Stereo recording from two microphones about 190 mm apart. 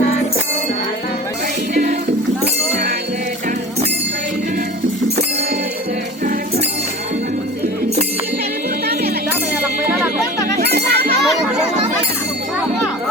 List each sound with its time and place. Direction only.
1.7 s music: 40° right (ahead or behind)
10.6 s music: 55° right (ahead or behind)